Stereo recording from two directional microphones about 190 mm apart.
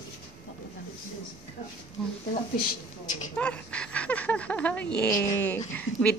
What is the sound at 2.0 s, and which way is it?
Speech, 5° left (ahead or behind).